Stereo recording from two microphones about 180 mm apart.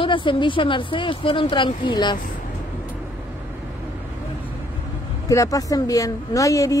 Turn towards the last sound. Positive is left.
turn(degrees=15)  # may be behind; listen again after turning